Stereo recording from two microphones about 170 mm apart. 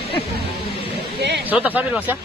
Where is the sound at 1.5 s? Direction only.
10° right (ahead or behind).